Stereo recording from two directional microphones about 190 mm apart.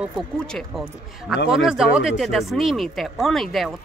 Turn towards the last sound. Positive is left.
turn(degrees=0)  # may be behind; listen again after turning